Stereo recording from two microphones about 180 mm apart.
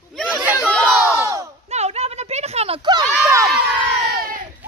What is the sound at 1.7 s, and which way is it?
Speech, 35° right (ahead or behind).